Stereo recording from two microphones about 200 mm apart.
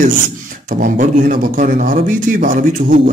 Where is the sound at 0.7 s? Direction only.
40° right (ahead or behind).